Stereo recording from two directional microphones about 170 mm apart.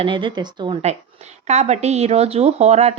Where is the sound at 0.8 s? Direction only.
40° right (ahead or behind).